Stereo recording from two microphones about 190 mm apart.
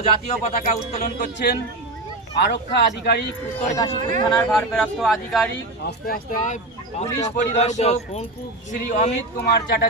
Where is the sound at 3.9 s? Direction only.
40° right (ahead or behind).